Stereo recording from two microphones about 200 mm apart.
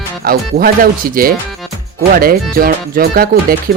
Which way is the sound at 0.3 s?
45° right (ahead or behind).